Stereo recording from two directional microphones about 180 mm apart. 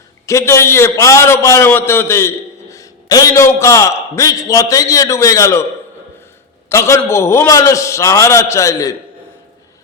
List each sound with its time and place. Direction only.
0.3 s a man's voice: 15° left (ahead or behind)
6.7 s a man's voice: 15° left (ahead or behind)